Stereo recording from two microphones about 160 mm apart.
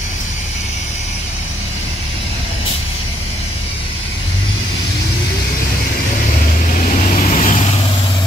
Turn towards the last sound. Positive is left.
turn(degrees=50)  # may be behind; listen again after turning